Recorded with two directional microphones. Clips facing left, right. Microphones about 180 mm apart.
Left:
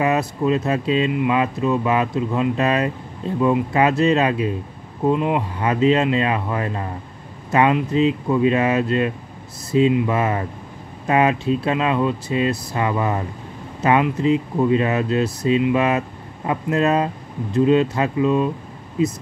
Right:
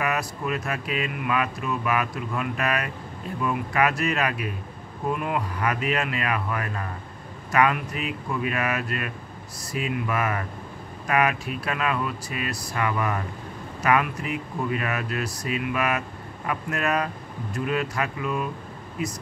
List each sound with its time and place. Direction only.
0.0 s speech: 25° left (ahead or behind)